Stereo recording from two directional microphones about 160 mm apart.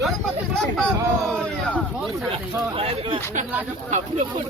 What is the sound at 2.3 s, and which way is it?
Speech, 35° right (ahead or behind).